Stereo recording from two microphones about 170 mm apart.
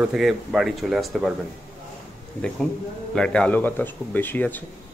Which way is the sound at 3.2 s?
5° left (ahead or behind).